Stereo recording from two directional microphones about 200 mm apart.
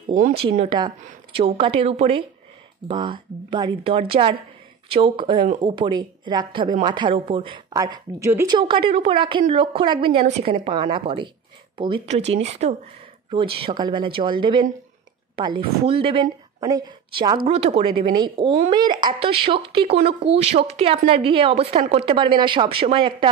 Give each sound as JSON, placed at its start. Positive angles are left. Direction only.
{"t": 0.1, "sound": "speech", "side_deg": -40}
{"t": 0.6, "sound": "speech", "side_deg": -20}